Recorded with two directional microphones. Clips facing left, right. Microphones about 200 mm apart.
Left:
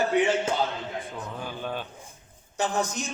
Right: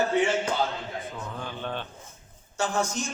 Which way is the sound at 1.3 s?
10° left (ahead or behind).